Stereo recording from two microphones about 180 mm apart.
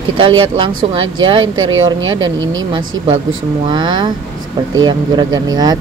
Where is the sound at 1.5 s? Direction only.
90° right.